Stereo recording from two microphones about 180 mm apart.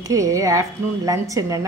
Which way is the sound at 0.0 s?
20° right (ahead or behind).